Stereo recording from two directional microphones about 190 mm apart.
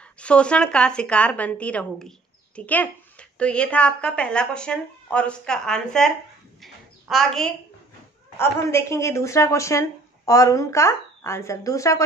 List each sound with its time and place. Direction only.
0.2 s a woman's voice: 5° left (ahead or behind)
6.6 s a sound: centre (ahead or behind)
8.4 s speech: 15° left (ahead or behind)